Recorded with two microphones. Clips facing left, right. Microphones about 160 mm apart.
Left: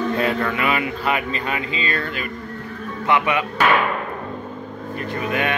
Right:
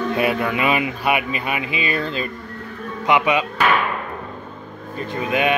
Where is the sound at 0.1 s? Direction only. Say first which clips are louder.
Right 1 dB; 15° right (ahead or behind).